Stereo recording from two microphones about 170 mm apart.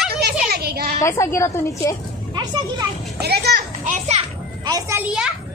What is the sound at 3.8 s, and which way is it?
Children playing, 45° right (ahead or behind).